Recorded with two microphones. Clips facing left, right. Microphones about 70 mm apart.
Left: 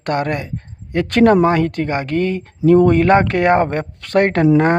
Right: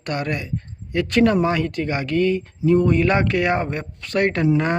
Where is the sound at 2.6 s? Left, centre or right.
Left.